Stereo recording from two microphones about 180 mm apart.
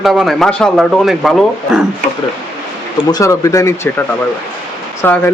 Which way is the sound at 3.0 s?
20° left (ahead or behind).